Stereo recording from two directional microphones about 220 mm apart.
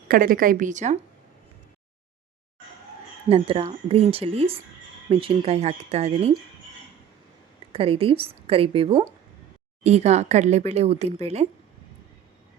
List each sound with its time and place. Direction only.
0.1 s a woman's voice: 40° right (ahead or behind)
3.2 s speech: 25° right (ahead or behind)
7.7 s speech: 25° right (ahead or behind)